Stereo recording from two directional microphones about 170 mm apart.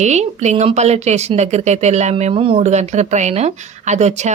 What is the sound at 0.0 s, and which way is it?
Speech, 40° right (ahead or behind).